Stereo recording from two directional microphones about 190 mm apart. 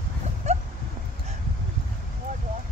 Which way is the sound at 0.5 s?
35° right (ahead or behind).